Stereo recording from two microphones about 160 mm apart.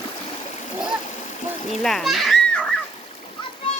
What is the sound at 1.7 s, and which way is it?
Speech, centre (ahead or behind).